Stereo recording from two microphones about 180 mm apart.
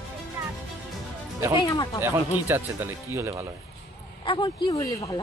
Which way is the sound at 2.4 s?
10° right (ahead or behind).